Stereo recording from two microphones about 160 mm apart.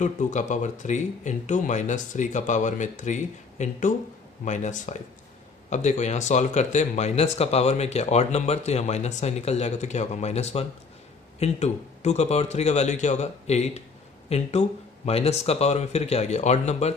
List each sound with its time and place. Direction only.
0.0 s speech: 50° left (ahead or behind)